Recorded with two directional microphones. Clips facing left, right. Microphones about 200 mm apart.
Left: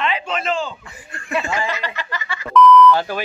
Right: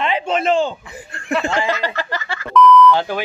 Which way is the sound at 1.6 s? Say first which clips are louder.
Right 5 dB; 30° right (ahead or behind).